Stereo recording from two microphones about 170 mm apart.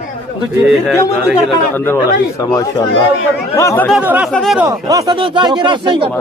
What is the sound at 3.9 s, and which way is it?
Speech, 5° right (ahead or behind).